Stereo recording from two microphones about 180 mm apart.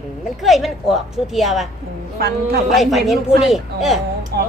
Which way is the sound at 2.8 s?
Centre (ahead or behind).